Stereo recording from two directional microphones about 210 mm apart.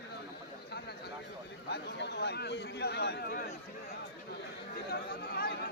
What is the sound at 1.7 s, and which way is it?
A man's voice, 50° left (ahead or behind).